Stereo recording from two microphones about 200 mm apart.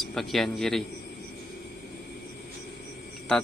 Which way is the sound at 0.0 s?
Centre (ahead or behind).